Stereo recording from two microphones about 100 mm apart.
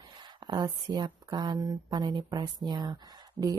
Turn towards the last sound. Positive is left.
turn(degrees=-40)  # may be behind; listen again after turning